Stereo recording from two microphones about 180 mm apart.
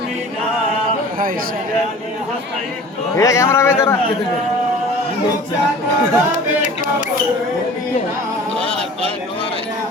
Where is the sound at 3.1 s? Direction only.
15° left (ahead or behind).